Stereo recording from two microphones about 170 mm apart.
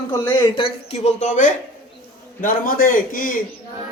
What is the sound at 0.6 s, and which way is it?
A woman's voice, 35° left (ahead or behind).